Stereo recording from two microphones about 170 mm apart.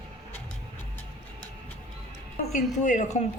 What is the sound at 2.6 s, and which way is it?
Speech, 45° left (ahead or behind).